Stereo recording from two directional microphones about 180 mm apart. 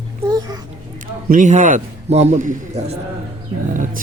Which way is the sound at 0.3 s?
20° right (ahead or behind).